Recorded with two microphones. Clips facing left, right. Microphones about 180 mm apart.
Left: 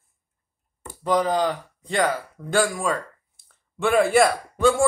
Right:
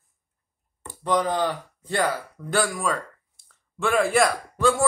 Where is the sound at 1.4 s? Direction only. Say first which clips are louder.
Left 2 dB; 15° left (ahead or behind).